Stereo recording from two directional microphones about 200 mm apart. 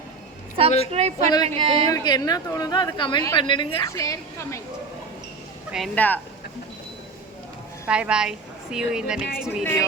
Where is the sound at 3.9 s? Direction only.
15° left (ahead or behind).